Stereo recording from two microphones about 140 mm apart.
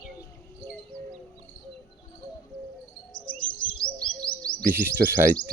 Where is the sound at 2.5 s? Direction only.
90° right.